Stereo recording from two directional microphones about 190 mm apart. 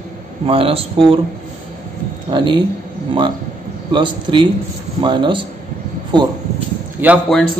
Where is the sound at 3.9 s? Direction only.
25° right (ahead or behind).